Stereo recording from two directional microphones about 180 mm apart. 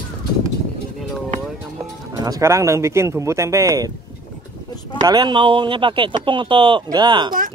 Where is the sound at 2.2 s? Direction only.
15° right (ahead or behind).